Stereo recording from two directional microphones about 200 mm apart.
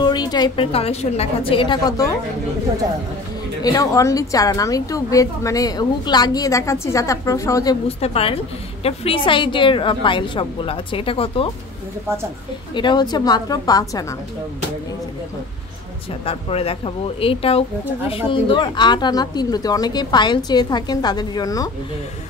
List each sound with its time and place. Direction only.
0.0 s speech: 20° left (ahead or behind)
3.6 s a woman's voice: 15° left (ahead or behind)
8.0 s speech: 30° left (ahead or behind)
12.7 s speech: 20° left (ahead or behind)
16.3 s speech: 30° left (ahead or behind)